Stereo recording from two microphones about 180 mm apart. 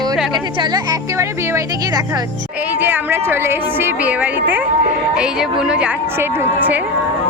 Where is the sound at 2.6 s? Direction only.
10° right (ahead or behind).